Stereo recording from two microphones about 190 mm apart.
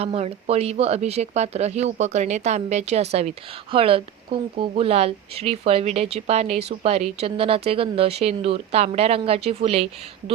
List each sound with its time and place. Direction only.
0.0 s speech: 30° right (ahead or behind)